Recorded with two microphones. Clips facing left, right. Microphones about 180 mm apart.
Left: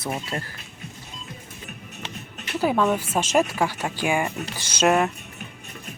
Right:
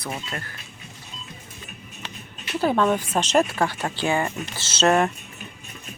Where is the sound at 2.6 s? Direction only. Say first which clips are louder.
Right 1 dB; 10° left (ahead or behind).